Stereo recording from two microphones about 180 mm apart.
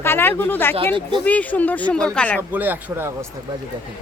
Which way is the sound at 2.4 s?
10° right (ahead or behind).